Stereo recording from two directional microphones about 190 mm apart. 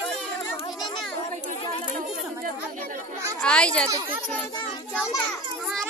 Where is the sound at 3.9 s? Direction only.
20° right (ahead or behind).